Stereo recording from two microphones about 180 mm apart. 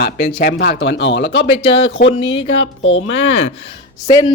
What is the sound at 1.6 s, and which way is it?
Speech, 30° left (ahead or behind).